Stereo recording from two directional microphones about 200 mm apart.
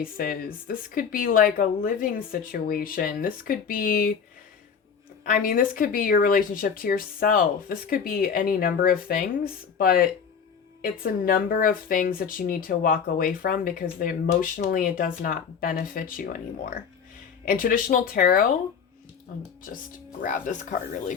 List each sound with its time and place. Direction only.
0.0 s speech: 45° left (ahead or behind)
5.2 s speech: 45° left (ahead or behind)
20.2 s speech: 40° left (ahead or behind)